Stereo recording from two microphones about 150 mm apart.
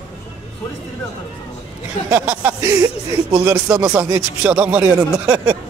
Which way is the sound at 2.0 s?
15° right (ahead or behind).